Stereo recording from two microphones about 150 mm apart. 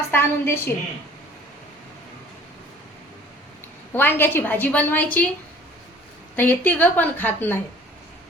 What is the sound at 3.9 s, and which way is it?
A woman's voice, 15° left (ahead or behind).